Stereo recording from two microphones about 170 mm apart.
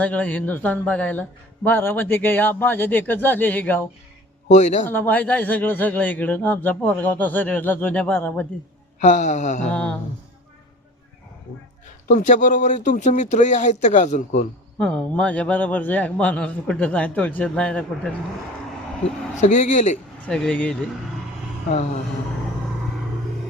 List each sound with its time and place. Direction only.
0.0 s speech: 10° left (ahead or behind)
4.5 s speech: 45° left (ahead or behind)
4.9 s speech: 10° left (ahead or behind)
9.0 s speech: 45° left (ahead or behind)
9.7 s speech: 5° left (ahead or behind)
12.0 s speech: 45° left (ahead or behind)
14.8 s speech: 5° left (ahead or behind)
19.4 s speech: 45° left (ahead or behind)
20.2 s speech: 5° left (ahead or behind)